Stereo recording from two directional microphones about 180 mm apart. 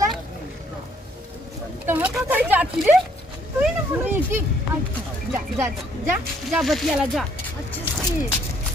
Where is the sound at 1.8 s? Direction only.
10° right (ahead or behind).